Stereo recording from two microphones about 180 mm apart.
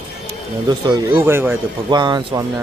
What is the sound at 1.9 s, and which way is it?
Speech, 25° right (ahead or behind).